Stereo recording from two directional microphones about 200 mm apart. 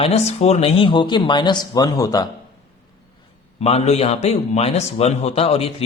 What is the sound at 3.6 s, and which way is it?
A man's voice, 30° left (ahead or behind).